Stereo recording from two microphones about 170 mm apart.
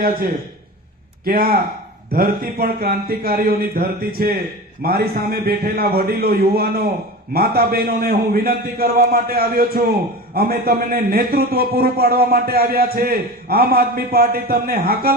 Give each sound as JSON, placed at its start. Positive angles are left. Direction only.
{"t": 0.0, "sound": "a man's voice", "side_deg": -60}